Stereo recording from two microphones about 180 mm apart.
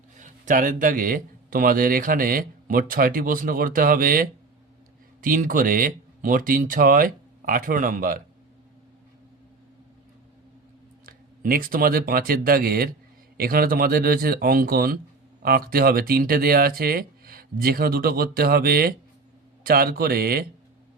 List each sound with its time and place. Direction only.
0.2 s speech: 50° right (ahead or behind)
11.0 s speech: 55° right (ahead or behind)